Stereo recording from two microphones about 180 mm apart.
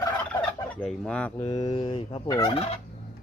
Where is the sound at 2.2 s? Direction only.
20° left (ahead or behind).